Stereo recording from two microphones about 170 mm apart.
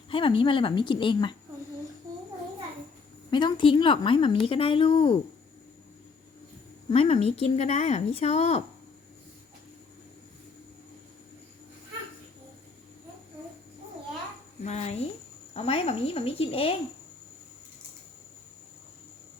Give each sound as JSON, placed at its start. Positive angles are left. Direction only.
{"t": 0.1, "sound": "a woman's voice", "side_deg": 30}
{"t": 3.2, "sound": "a woman's voice", "side_deg": 30}
{"t": 6.9, "sound": "a woman's voice", "side_deg": 35}
{"t": 14.6, "sound": "a woman's voice", "side_deg": 40}